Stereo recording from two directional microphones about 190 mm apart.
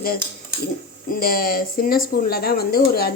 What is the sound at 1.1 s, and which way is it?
Speech, 50° left (ahead or behind).